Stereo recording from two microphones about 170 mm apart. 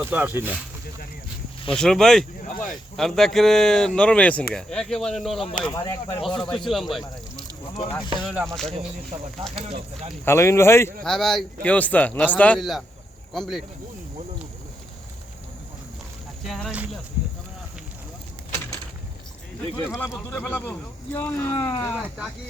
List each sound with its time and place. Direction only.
0.0 s speech: 10° right (ahead or behind)
1.7 s speech: 5° left (ahead or behind)
5.6 s speech: 20° left (ahead or behind)
6.2 s speech: 5° left (ahead or behind)
7.8 s speech: 25° left (ahead or behind)
8.2 s speech: 5° right (ahead or behind)
9.6 s speech: 35° right (ahead or behind)
10.2 s a man's voice: 15° left (ahead or behind)
11.0 s a man's voice: centre (ahead or behind)
16.5 s speech: centre (ahead or behind)
19.8 s a man's voice: 15° left (ahead or behind)
21.9 s speech: centre (ahead or behind)